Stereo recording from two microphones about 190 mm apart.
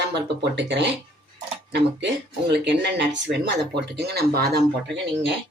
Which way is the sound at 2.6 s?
65° right (ahead or behind).